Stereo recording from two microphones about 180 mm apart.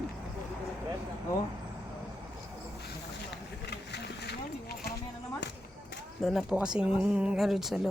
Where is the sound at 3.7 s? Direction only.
65° left (ahead or behind).